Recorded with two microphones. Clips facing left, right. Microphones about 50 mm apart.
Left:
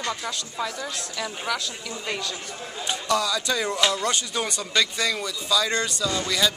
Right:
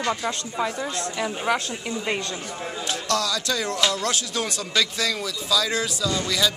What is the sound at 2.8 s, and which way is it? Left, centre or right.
Speech, centre.